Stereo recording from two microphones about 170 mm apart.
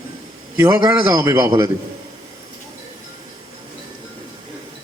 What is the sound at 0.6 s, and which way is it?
A man's voice, 20° right (ahead or behind).